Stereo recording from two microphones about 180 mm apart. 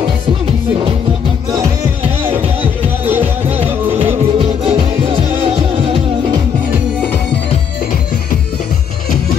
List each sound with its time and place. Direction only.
4.4 s music: 30° right (ahead or behind)